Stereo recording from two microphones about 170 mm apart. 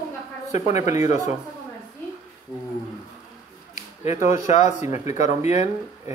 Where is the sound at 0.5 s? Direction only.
45° left (ahead or behind).